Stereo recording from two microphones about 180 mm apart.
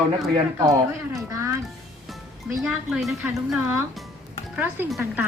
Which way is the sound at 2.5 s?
Centre (ahead or behind).